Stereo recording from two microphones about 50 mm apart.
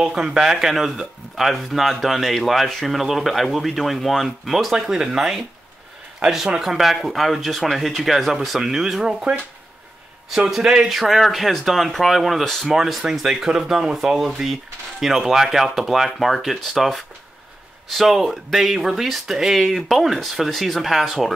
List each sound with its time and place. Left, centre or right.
0.0 s speech: centre
10.5 s speech: centre
10.9 s speech: centre